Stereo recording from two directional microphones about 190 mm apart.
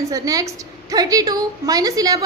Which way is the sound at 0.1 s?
20° right (ahead or behind).